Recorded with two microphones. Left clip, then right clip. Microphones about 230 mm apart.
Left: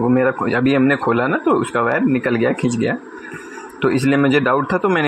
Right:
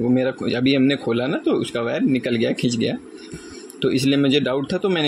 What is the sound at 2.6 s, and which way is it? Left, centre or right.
Speech, centre.